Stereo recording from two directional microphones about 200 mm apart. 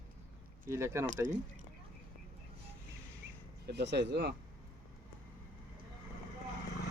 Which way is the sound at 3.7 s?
55° right (ahead or behind).